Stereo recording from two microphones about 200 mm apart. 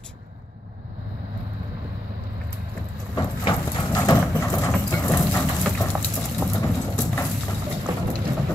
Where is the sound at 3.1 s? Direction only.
15° left (ahead or behind).